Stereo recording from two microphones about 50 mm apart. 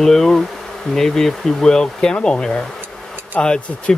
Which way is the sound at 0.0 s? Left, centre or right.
Centre.